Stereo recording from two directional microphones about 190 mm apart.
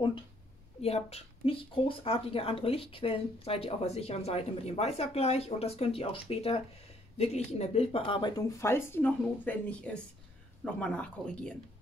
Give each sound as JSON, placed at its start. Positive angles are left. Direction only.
{"t": 0.8, "sound": "speech", "side_deg": 30}